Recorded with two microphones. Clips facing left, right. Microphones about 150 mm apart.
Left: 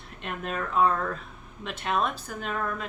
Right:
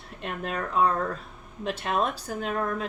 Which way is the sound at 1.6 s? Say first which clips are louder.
Right 1 dB; 35° right (ahead or behind).